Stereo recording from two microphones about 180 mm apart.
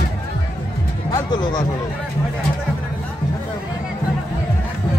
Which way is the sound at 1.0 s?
20° left (ahead or behind).